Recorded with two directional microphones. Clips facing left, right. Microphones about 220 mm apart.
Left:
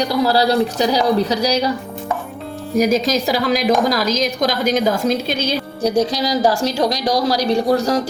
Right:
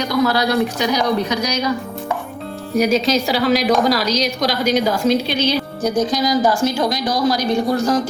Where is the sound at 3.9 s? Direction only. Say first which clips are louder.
Even; 50° left (ahead or behind).